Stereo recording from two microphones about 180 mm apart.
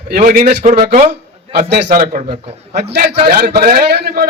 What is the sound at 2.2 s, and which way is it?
Speech, 30° right (ahead or behind).